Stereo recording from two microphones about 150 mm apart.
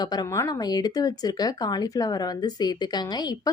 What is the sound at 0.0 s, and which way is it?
Speech, 30° left (ahead or behind).